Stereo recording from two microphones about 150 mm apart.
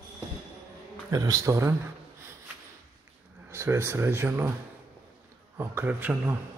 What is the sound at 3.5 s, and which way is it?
Speech, 15° right (ahead or behind).